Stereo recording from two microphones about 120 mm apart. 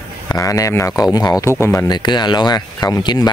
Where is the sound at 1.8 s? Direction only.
35° left (ahead or behind).